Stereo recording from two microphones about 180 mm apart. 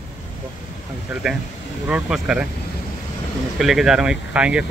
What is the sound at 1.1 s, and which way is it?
Speech, 5° right (ahead or behind).